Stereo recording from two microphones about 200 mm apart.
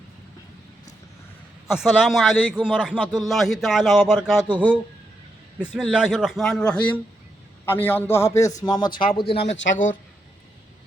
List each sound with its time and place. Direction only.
1.6 s a man's voice: 5° right (ahead or behind)
5.5 s a man's voice: 5° right (ahead or behind); by 9.4 s 25° left (ahead or behind)